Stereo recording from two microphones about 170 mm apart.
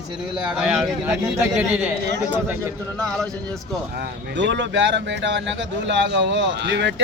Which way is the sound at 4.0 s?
90° right.